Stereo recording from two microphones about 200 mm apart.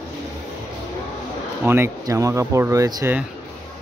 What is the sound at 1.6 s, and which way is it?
Speech, 10° right (ahead or behind).